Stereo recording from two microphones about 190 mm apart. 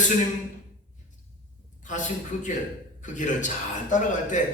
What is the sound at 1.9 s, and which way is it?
A man's voice, 40° left (ahead or behind).